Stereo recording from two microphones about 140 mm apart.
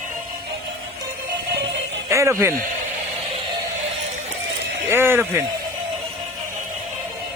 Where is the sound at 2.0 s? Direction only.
20° right (ahead or behind).